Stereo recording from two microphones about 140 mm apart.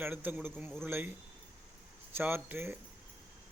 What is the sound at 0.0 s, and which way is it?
Speech, 15° right (ahead or behind).